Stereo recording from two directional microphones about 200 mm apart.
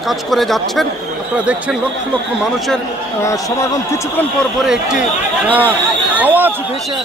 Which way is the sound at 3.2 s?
15° left (ahead or behind).